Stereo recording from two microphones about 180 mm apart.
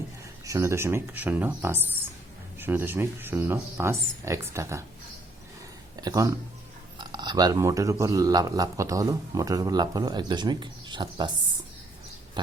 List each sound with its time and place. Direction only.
0.4 s speech: 15° right (ahead or behind)
6.0 s speech: 20° right (ahead or behind)